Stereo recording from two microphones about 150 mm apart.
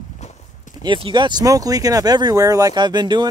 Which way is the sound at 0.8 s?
30° right (ahead or behind).